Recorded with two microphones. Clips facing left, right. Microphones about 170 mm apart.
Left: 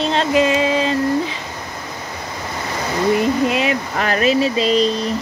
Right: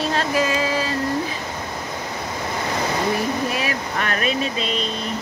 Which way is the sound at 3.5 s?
25° left (ahead or behind).